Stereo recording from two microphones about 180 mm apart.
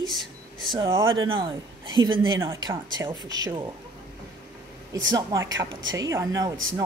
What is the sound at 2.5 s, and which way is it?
Speech, 15° right (ahead or behind).